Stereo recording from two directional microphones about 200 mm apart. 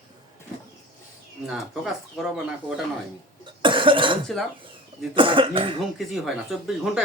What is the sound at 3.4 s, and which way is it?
Cough, 25° right (ahead or behind).